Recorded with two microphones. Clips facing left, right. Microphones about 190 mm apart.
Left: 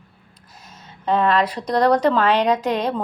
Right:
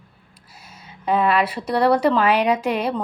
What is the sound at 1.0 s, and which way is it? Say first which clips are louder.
Speech: left 1 dB; 10° right (ahead or behind).